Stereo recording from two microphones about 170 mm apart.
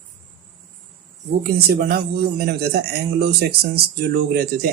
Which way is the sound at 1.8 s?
65° right (ahead or behind).